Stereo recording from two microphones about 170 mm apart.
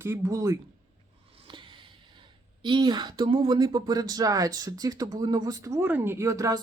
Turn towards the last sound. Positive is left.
turn(degrees=-20)  # may be behind; listen again after turning